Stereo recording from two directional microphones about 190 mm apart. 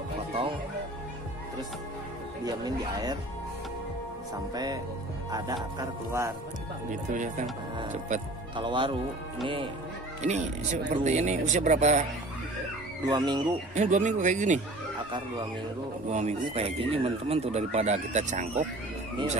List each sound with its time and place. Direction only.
2.4 s speech: 20° right (ahead or behind)
5.3 s speech: 20° right (ahead or behind)
6.9 s speech: 40° right (ahead or behind)
8.5 s speech: 25° right (ahead or behind)
10.2 s speech: 35° right (ahead or behind)
13.0 s speech: 20° right (ahead or behind)
13.7 s speech: 40° right (ahead or behind)
15.0 s speech: 25° right (ahead or behind)
16.1 s speech: 35° right (ahead or behind)